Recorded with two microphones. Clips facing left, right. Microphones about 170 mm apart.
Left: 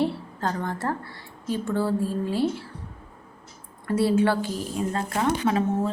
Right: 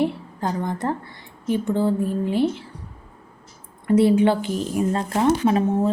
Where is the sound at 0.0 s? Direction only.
15° right (ahead or behind).